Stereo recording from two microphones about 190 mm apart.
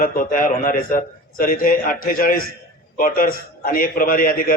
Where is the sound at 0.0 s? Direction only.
45° left (ahead or behind).